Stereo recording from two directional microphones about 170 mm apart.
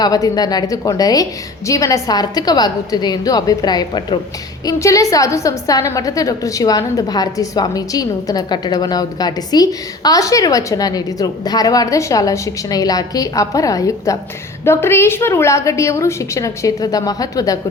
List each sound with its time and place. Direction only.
0.0 s a woman's voice: 20° left (ahead or behind)